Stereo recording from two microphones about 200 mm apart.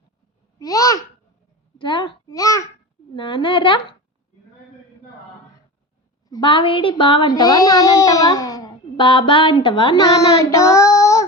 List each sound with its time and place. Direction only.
0.6 s a child's voice: 15° left (ahead or behind)
6.2 s a child's voice: 20° left (ahead or behind)
10.3 s child singing: 15° left (ahead or behind)